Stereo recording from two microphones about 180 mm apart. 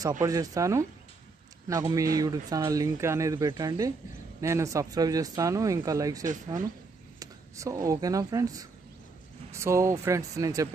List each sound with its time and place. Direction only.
0.2 s speech: 20° right (ahead or behind)